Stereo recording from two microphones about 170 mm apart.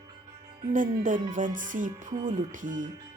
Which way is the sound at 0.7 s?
50° right (ahead or behind).